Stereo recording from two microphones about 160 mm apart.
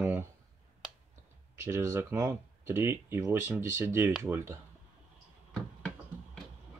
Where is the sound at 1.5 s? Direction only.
15° right (ahead or behind).